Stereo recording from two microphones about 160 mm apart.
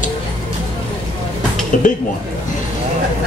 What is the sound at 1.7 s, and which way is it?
Speech, 55° left (ahead or behind).